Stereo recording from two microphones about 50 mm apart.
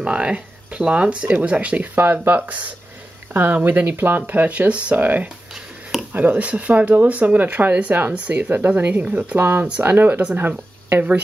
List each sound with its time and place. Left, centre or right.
0.0 s speech: right
4.3 s speech: right
5.5 s a sound: centre
6.1 s speech: right
9.4 s speech: right